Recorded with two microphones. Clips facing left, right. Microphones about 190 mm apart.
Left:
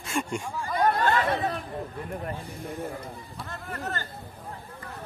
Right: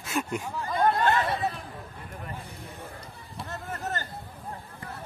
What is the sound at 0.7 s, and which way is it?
Chatter, 25° right (ahead or behind).